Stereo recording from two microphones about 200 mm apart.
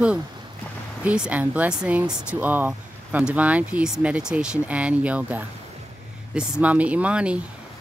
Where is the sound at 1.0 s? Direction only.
5° right (ahead or behind).